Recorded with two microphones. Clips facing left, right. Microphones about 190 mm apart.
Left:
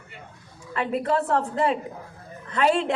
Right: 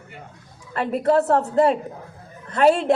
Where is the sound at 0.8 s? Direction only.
40° right (ahead or behind).